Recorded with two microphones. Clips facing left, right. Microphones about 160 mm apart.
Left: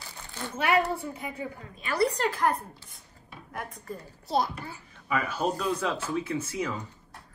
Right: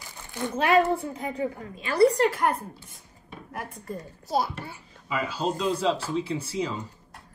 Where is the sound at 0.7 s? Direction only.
20° right (ahead or behind).